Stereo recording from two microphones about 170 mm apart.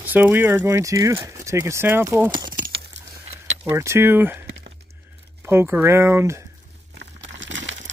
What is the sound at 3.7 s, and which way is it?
Speech, 15° right (ahead or behind).